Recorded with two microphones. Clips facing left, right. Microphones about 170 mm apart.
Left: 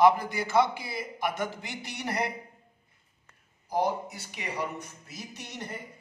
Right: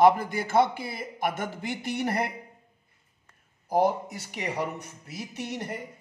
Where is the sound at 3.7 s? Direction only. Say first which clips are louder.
Right 4 dB; 50° right (ahead or behind).